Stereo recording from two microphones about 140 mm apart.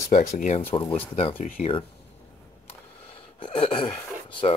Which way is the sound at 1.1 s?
45° left (ahead or behind).